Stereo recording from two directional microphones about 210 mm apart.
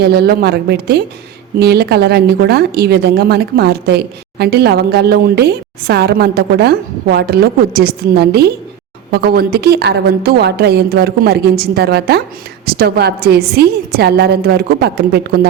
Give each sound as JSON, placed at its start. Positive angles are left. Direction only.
{"t": 0.0, "sound": "a woman's voice", "side_deg": -50}